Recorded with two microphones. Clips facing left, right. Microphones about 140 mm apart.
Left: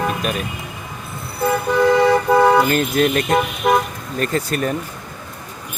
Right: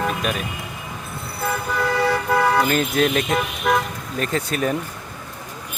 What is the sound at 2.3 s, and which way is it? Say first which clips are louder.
Vehicle: left 5 dB; 15° left (ahead or behind).